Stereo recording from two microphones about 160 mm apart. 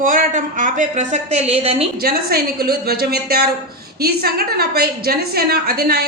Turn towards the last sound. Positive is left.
turn(degrees=-75)  # may be behind; listen again after turning